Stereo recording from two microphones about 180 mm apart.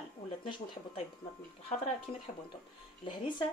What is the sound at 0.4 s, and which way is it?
Speech, 30° left (ahead or behind).